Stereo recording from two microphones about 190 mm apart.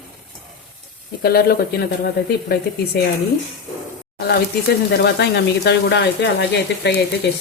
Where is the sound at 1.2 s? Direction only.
55° left (ahead or behind).